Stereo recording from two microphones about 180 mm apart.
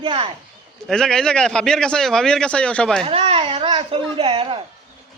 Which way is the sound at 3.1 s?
30° right (ahead or behind).